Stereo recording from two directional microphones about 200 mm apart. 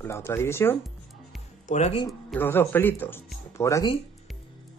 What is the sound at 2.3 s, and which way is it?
Speech, 10° left (ahead or behind).